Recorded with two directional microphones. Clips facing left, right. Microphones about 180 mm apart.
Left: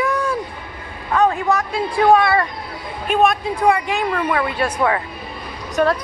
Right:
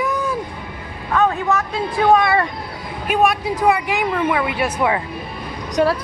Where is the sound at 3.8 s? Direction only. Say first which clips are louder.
Right 1 dB; 15° right (ahead or behind).